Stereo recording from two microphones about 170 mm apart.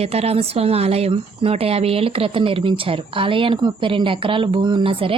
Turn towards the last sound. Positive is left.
turn(degrees=-30)  # may be behind; listen again after turning